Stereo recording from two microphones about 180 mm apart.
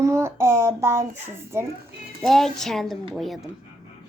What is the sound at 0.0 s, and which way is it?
Child singing, 15° right (ahead or behind).